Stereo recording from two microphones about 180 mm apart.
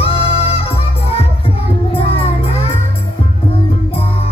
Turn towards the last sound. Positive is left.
turn(degrees=35)  # may be behind; listen again after turning